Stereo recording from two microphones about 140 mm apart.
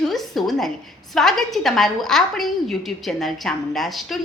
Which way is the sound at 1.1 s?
Centre (ahead or behind).